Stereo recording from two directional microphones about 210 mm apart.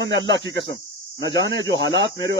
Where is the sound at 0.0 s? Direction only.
60° right (ahead or behind).